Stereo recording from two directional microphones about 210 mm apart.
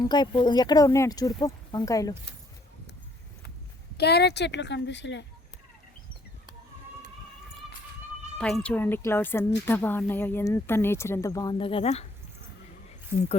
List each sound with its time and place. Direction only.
0.0 s speech: 20° left (ahead or behind)
3.9 s a child's voice: 50° left (ahead or behind)
8.4 s speech: 5° left (ahead or behind); by 12.0 s 30° left (ahead or behind)